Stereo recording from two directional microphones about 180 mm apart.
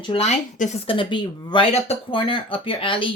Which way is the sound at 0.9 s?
25° left (ahead or behind).